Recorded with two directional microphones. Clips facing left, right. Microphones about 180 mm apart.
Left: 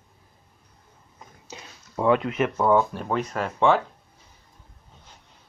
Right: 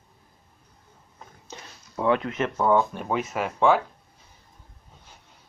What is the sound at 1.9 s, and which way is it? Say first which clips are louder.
Speech: left 2 dB; 20° left (ahead or behind).